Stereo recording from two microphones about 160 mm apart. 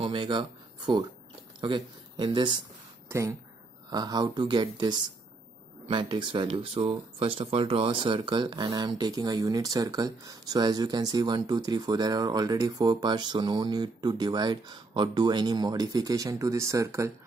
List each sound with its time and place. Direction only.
0.0 s speech: 30° right (ahead or behind)